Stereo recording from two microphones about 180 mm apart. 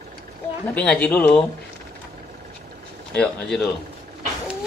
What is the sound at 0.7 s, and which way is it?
Speech, 5° left (ahead or behind).